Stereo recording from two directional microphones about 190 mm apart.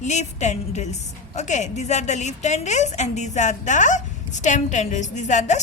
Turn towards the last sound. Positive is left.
turn(degrees=40)  # may be behind; listen again after turning